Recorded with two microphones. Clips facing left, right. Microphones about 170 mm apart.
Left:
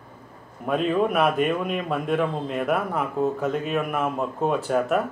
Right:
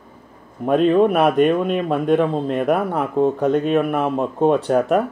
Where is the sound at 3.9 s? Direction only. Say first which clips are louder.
Right 5 dB; 30° right (ahead or behind).